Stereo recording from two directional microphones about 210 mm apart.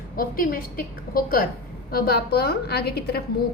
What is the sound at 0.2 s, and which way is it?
A woman's voice, 40° left (ahead or behind).